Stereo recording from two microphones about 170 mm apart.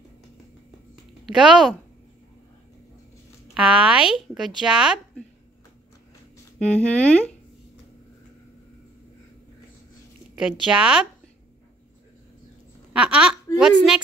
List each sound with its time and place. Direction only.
1.2 s a woman's voice: centre (ahead or behind)
3.5 s a woman's voice: 5° right (ahead or behind)
6.6 s a woman's voice: 5° left (ahead or behind)
10.3 s a woman's voice: 5° right (ahead or behind)
12.9 s speech: 5° right (ahead or behind)